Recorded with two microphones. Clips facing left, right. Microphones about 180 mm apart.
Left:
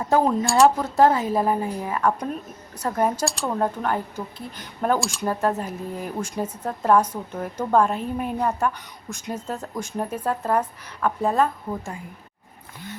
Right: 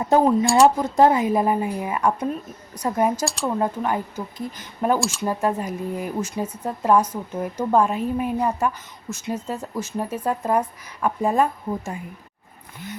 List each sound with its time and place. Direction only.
0.0 s a woman's voice: 20° right (ahead or behind)
0.4 s speech: centre (ahead or behind)
0.8 s a woman's voice: 15° right (ahead or behind)
3.2 s a woman's voice: centre (ahead or behind)